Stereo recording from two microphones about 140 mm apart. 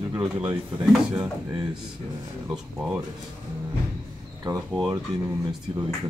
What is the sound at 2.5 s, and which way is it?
Speech, 10° right (ahead or behind).